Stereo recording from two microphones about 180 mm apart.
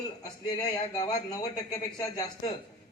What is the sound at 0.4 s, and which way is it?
A man's voice, 20° left (ahead or behind).